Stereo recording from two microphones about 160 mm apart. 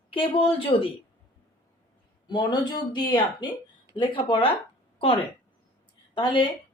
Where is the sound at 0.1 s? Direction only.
35° left (ahead or behind).